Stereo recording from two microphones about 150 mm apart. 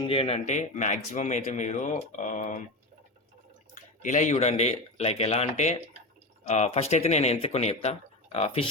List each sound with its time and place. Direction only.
0.0 s speech: 40° left (ahead or behind); by 2.6 s 55° left (ahead or behind)
3.8 s speech: 55° left (ahead or behind); by 8.7 s 40° left (ahead or behind)